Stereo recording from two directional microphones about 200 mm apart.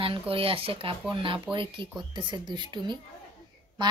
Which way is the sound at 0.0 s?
25° right (ahead or behind).